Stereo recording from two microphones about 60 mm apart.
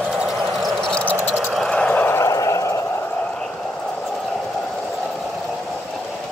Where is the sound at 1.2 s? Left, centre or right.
Centre.